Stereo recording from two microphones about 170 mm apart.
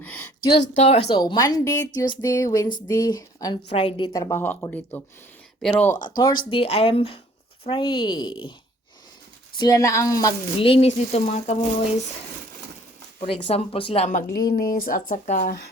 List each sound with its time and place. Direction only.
0.0 s a sound: 10° left (ahead or behind)
0.5 s speech: 90° left
0.8 s speech: 35° left (ahead or behind)
1.1 s a woman's voice: 25° left (ahead or behind)
3.7 s a woman's voice: 35° left (ahead or behind); by 5.9 s 5° left (ahead or behind)
6.1 s a woman's voice: 25° left (ahead or behind)
9.6 s a woman's voice: 20° left (ahead or behind)
10.6 s speech: 35° left (ahead or behind)
13.2 s speech: 35° left (ahead or behind)
14.3 s speech: 65° left (ahead or behind)